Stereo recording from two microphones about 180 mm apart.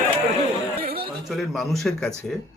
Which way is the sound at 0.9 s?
30° right (ahead or behind).